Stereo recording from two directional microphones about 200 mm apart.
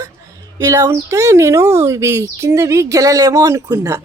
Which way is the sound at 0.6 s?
15° right (ahead or behind).